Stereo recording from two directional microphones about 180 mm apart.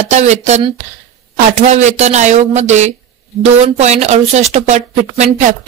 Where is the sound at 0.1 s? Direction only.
40° right (ahead or behind).